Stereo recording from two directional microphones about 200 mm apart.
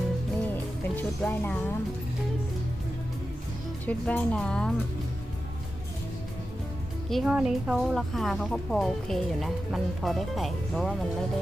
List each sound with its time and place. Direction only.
0.4 s music: 10° left (ahead or behind)
3.8 s speech: 5° left (ahead or behind)
7.1 s speech: 5° right (ahead or behind)